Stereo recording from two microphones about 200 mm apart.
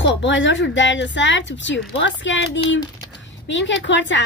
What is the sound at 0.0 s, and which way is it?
Speech, 65° left (ahead or behind).